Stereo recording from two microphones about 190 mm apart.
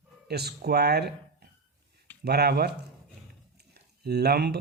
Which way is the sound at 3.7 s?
60° right (ahead or behind).